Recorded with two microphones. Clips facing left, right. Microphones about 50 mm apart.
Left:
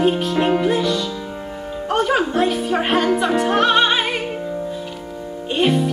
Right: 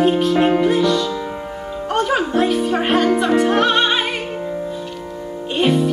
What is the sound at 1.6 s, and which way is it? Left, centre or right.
Music, centre.